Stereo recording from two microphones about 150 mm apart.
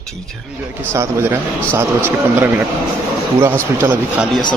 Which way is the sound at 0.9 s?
20° right (ahead or behind).